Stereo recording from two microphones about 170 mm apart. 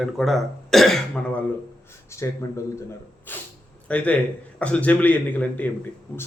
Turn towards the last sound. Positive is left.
turn(degrees=10)  # may be behind; listen again after turning